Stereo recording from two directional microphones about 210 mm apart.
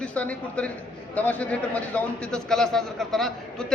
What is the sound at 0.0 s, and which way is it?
A man's voice, 5° left (ahead or behind).